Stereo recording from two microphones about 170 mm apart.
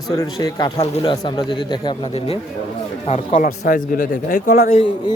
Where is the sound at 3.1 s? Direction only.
50° left (ahead or behind).